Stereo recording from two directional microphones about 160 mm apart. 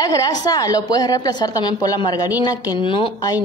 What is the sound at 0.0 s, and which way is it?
A woman's voice, 25° left (ahead or behind).